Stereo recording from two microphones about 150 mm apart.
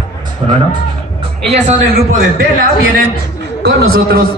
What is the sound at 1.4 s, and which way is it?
Speech, 50° right (ahead or behind).